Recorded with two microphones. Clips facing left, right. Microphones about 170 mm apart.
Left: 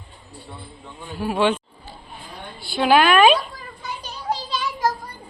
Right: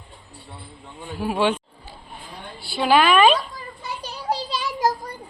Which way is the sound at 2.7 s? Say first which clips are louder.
Left 1 dB; centre (ahead or behind).